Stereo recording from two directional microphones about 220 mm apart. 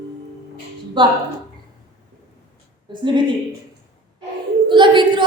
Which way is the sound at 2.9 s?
20° right (ahead or behind).